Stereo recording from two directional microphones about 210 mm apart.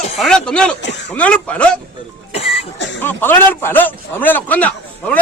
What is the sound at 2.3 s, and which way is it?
Cough, 30° left (ahead or behind).